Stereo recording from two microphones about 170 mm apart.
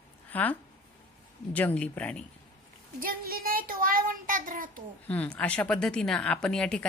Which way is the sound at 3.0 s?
60° right (ahead or behind).